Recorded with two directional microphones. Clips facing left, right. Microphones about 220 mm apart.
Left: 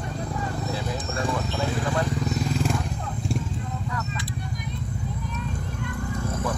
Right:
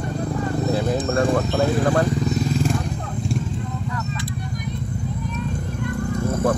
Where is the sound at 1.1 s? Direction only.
55° right (ahead or behind).